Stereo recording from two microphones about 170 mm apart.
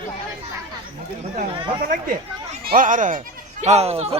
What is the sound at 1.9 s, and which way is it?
A woman's voice, 55° right (ahead or behind).